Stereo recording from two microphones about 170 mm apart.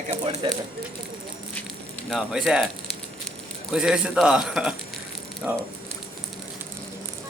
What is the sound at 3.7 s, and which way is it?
A man's voice, 5° right (ahead or behind).